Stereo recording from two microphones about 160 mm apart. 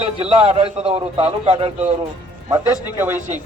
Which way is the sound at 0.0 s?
40° right (ahead or behind).